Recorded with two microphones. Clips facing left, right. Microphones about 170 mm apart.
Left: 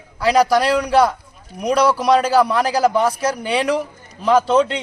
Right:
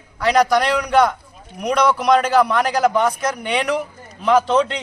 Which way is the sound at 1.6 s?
35° left (ahead or behind).